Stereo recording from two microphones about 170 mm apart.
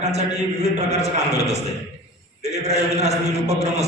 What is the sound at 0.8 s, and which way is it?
A man's voice, 40° right (ahead or behind).